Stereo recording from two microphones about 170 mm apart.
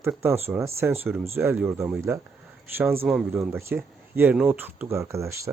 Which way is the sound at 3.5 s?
15° right (ahead or behind).